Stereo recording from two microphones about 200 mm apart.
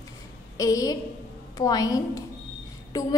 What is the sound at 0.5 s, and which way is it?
A woman's voice, 15° left (ahead or behind).